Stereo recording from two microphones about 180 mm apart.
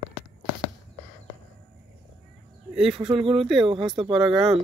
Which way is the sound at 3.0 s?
30° right (ahead or behind).